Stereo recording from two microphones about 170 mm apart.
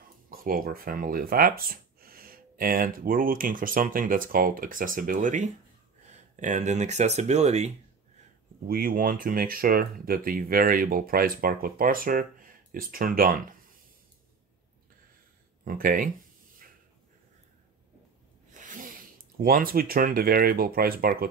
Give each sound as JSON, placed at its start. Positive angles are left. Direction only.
{"t": 0.3, "sound": "speech", "side_deg": -60}
{"t": 8.6, "sound": "speech", "side_deg": -60}
{"t": 15.6, "sound": "speech", "side_deg": -55}
{"t": 18.5, "sound": "speech", "side_deg": -50}